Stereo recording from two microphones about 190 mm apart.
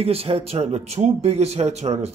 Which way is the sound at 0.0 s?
30° right (ahead or behind).